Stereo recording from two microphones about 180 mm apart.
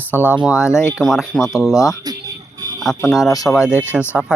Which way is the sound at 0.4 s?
5° right (ahead or behind).